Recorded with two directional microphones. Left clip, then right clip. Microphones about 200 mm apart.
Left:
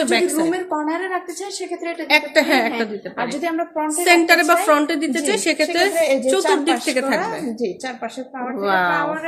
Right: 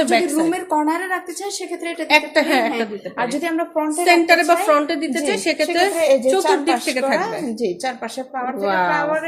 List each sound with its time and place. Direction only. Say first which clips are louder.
0.1 s a woman's voice: right 1 dB; 5° left (ahead or behind)
0.9 s a woman's voice: right 2 dB; 30° right (ahead or behind)
2.0 s a woman's voice: even; centre (ahead or behind)
3.2 s a woman's voice: right 1 dB; 25° right (ahead or behind)
4.0 s a woman's voice: even; 10° left (ahead or behind)
6.0 s a woman's voice: right 2 dB; 25° right (ahead or behind)
6.8 s a woman's voice: right 1 dB; 10° left (ahead or behind)
8.6 s a woman's voice: left 1 dB; 10° left (ahead or behind)